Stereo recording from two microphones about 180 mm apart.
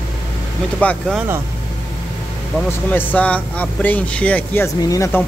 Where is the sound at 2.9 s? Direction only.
10° left (ahead or behind).